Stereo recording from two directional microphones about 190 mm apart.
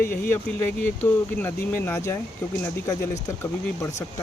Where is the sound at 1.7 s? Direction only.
10° left (ahead or behind).